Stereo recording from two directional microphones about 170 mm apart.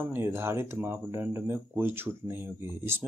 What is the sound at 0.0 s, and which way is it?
Speech, 15° right (ahead or behind).